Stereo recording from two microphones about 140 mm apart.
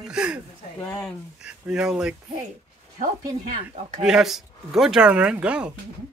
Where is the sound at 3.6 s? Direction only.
50° right (ahead or behind).